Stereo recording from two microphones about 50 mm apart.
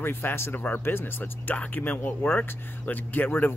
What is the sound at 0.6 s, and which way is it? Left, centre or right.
Speech, left.